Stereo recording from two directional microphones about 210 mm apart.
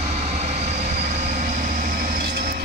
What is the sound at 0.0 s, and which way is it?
Vehicle, 30° right (ahead or behind).